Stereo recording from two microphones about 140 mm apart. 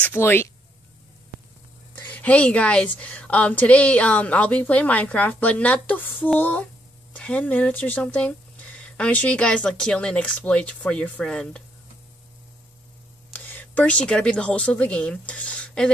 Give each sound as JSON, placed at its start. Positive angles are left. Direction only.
{"t": 0.0, "sound": "a woman's voice", "side_deg": 15}
{"t": 2.0, "sound": "a woman's voice", "side_deg": 10}
{"t": 13.3, "sound": "speech", "side_deg": 10}